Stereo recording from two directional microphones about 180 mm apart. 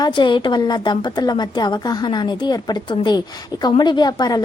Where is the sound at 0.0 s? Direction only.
25° left (ahead or behind).